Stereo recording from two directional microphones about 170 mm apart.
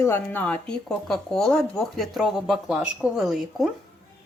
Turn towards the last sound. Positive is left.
turn(degrees=0)  # may be behind; listen again after turning